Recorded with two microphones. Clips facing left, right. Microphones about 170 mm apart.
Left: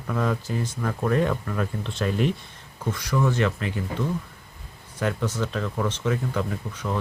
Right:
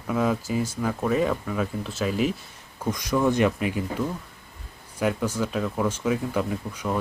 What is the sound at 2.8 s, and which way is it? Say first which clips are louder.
Speech: right 2 dB; 15° right (ahead or behind).